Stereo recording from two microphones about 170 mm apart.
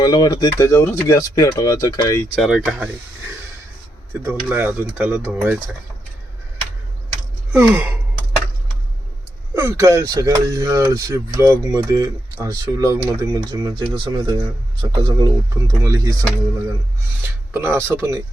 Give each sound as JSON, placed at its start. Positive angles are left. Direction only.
{"t": 0.0, "sound": "speech", "side_deg": 25}
{"t": 2.3, "sound": "speech", "side_deg": 0}
{"t": 4.2, "sound": "speech", "side_deg": -10}
{"t": 7.5, "sound": "speech", "side_deg": -10}
{"t": 9.6, "sound": "speech", "side_deg": -15}
{"t": 17.5, "sound": "speech", "side_deg": -15}